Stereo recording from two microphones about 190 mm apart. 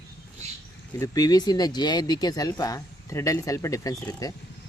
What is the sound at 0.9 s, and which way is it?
Speech, 15° left (ahead or behind).